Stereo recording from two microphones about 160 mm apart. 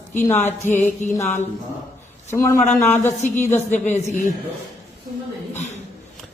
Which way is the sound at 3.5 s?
45° left (ahead or behind).